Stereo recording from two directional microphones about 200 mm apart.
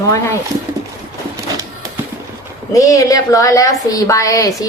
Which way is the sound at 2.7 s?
15° left (ahead or behind).